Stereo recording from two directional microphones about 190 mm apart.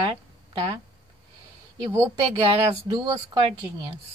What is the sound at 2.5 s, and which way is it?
Speech, 25° right (ahead or behind).